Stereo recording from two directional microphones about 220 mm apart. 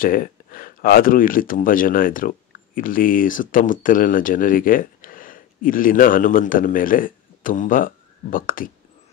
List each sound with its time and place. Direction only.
0.0 s speech: 40° left (ahead or behind)